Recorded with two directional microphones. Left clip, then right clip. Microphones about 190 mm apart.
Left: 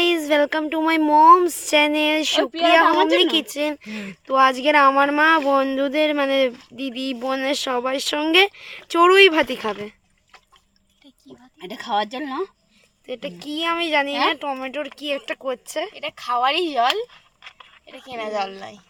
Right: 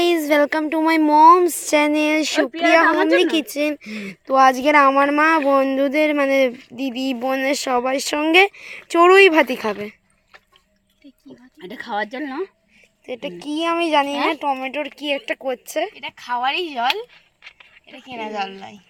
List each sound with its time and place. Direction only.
0.0 s speech: 15° right (ahead or behind)
11.6 s speech: 25° left (ahead or behind)
13.1 s speech: 5° right (ahead or behind)
16.0 s speech: 35° left (ahead or behind)
17.9 s speech: 35° left (ahead or behind)